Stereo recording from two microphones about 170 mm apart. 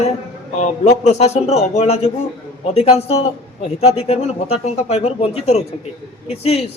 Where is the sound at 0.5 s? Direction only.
40° left (ahead or behind).